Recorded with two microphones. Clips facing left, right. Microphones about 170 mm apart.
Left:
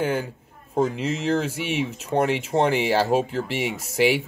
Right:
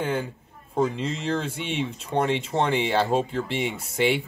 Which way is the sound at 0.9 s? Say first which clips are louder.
Left 4 dB; 5° left (ahead or behind).